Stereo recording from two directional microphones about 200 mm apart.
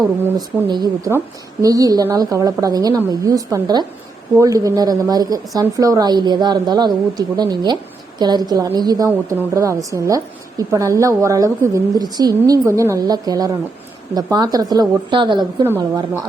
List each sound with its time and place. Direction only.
0.3 s a woman's voice: 20° right (ahead or behind)